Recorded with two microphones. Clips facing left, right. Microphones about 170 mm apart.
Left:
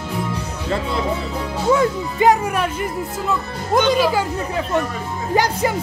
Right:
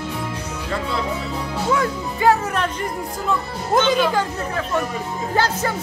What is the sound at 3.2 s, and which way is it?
Speech, 5° left (ahead or behind).